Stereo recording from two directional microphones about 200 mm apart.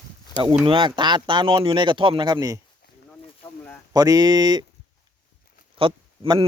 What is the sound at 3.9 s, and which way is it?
Speech, 20° right (ahead or behind).